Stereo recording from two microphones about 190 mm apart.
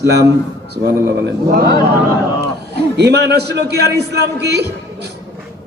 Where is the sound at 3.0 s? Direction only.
60° right (ahead or behind).